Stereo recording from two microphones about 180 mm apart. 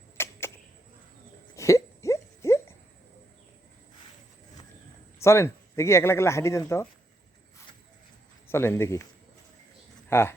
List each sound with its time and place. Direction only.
0.2 s a sound: 15° left (ahead or behind)
1.5 s hiccup: 15° left (ahead or behind)
5.2 s speech: 15° left (ahead or behind)
8.4 s speech: 15° left (ahead or behind)
10.1 s speech: 15° left (ahead or behind)